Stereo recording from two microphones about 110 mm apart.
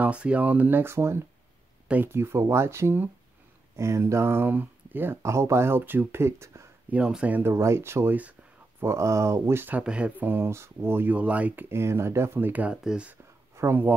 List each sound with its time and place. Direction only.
0.0 s speech: 10° right (ahead or behind)
6.9 s speech: 10° right (ahead or behind)
8.8 s speech: 25° right (ahead or behind); by 13.1 s 10° right (ahead or behind)
13.6 s speech: 20° right (ahead or behind)